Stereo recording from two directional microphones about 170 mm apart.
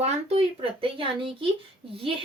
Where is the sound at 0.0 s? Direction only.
35° right (ahead or behind).